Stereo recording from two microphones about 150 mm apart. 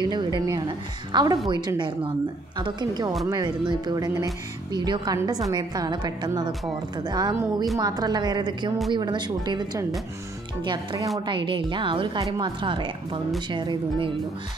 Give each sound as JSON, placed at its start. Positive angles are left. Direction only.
{"t": 0.0, "sound": "a woman's voice", "side_deg": -30}